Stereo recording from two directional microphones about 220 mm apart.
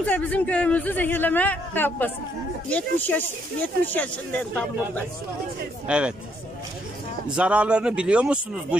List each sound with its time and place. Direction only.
0.0 s speech: 5° left (ahead or behind)
5.9 s a man's voice: 5° right (ahead or behind)
7.3 s a man's voice: 5° right (ahead or behind)